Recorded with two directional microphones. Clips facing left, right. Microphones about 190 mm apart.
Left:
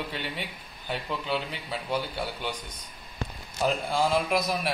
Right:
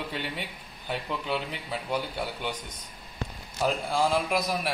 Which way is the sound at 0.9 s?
10° right (ahead or behind).